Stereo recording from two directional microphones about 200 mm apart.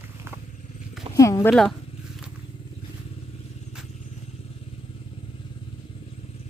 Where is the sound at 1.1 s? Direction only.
15° left (ahead or behind).